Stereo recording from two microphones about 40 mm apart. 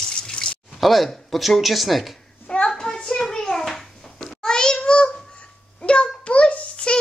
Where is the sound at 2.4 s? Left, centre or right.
Left.